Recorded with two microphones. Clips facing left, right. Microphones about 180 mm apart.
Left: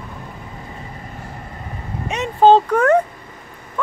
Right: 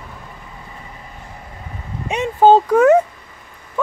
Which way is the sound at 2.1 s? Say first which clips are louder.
Right 1 dB; 15° right (ahead or behind).